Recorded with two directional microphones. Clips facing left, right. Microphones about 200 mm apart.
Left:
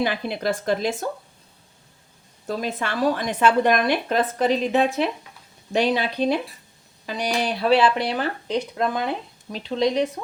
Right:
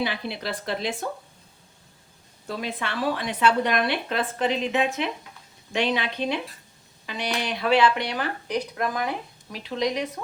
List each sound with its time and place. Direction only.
0.0 s speech: 50° left (ahead or behind)
2.5 s speech: 40° left (ahead or behind)